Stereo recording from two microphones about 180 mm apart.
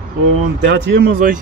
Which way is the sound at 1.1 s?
45° right (ahead or behind).